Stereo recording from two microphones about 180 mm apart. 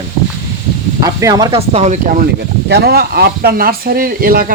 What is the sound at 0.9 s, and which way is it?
Speech, 20° right (ahead or behind).